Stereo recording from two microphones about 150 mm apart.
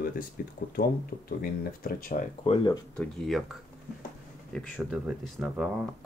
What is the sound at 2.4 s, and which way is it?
Speech, 40° left (ahead or behind).